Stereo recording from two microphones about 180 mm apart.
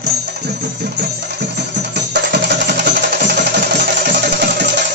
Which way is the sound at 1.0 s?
65° right (ahead or behind).